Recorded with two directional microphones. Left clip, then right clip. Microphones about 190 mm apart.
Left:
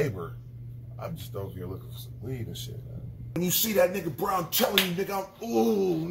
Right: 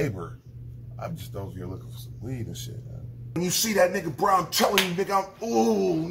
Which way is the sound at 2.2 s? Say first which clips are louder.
Right 1 dB; 45° right (ahead or behind).